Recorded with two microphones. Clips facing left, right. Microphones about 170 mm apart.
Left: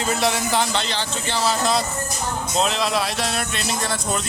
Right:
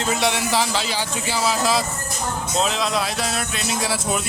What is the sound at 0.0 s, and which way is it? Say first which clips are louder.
Speech: even; centre (ahead or behind).